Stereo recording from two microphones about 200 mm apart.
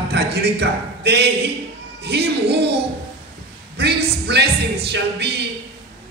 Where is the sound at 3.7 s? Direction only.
55° right (ahead or behind).